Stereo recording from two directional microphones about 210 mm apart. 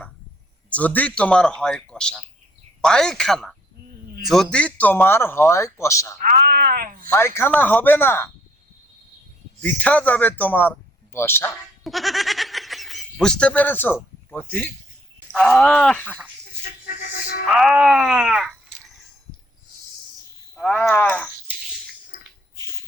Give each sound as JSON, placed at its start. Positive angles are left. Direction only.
{"t": 0.7, "sound": "a man's voice", "side_deg": 5}
{"t": 6.1, "sound": "a sound", "side_deg": -40}
{"t": 7.1, "sound": "a man's voice", "side_deg": 10}
{"t": 9.6, "sound": "a man's voice", "side_deg": 5}
{"t": 11.8, "sound": "snicker", "side_deg": 0}
{"t": 14.3, "sound": "a man's voice", "side_deg": 10}
{"t": 16.6, "sound": "music", "side_deg": 45}
{"t": 17.5, "sound": "speech", "side_deg": 0}
{"t": 20.6, "sound": "a man's voice", "side_deg": 5}